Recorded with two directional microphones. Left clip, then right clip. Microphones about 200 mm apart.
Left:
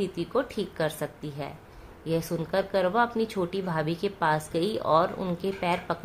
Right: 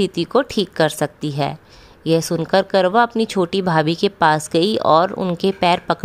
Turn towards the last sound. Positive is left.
turn(degrees=-50)  # may be behind; listen again after turning